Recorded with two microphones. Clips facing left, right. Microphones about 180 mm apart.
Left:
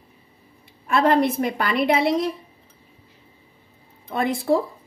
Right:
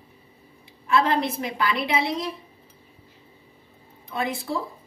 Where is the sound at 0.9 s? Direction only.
55° left (ahead or behind).